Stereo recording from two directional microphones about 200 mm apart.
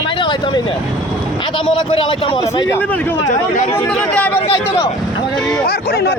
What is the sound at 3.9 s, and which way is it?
Speech, 5° left (ahead or behind).